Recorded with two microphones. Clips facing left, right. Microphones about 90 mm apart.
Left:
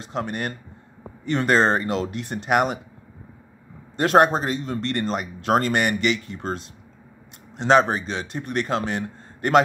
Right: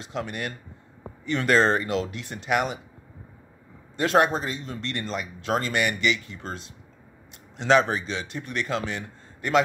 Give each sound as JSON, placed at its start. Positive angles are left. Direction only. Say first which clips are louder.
{"t": 0.0, "sound": "speech", "louder": "left 4 dB", "side_deg": 40}
{"t": 3.9, "sound": "speech", "louder": "left 4 dB", "side_deg": 50}